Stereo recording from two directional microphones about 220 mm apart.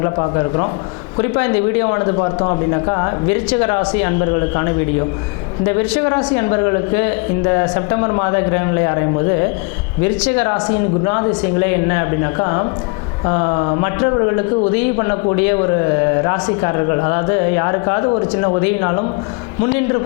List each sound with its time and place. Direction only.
0.0 s speech: 25° left (ahead or behind)
1.8 s speech: 20° left (ahead or behind)
6.1 s speech: 20° left (ahead or behind)
10.3 s speech: 20° left (ahead or behind)
16.2 s speech: 20° left (ahead or behind)